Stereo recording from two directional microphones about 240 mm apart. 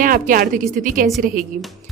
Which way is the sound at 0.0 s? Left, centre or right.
Right.